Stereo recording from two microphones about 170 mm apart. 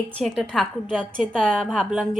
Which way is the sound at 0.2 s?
Centre (ahead or behind).